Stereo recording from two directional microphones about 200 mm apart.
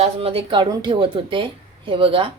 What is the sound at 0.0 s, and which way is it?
Speech, 30° right (ahead or behind).